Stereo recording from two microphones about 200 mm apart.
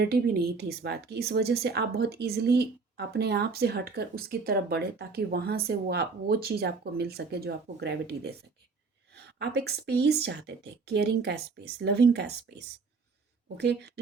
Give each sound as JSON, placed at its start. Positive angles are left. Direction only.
{"t": 0.0, "sound": "speech", "side_deg": -50}